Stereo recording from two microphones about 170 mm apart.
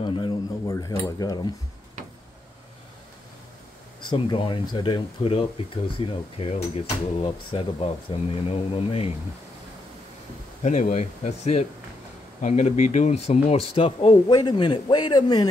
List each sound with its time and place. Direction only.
0.0 s cutlery: 30° left (ahead or behind)
4.0 s speech: 25° left (ahead or behind)
10.6 s speech: 45° left (ahead or behind); by 15.4 s 25° left (ahead or behind)